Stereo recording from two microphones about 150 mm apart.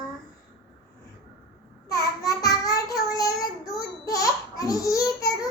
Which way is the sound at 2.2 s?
25° left (ahead or behind).